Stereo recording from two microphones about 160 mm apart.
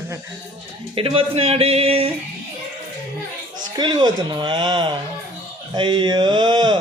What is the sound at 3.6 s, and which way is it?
Speech, 25° right (ahead or behind).